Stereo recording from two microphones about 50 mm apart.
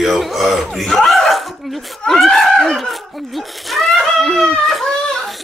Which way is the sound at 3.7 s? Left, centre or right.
Centre.